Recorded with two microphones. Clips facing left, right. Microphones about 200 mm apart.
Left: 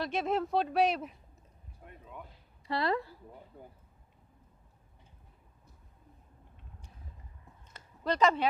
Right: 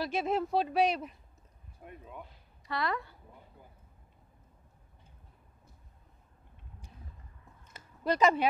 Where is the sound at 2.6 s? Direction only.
30° left (ahead or behind).